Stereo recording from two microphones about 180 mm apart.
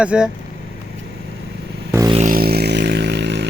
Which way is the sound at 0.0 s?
5° right (ahead or behind).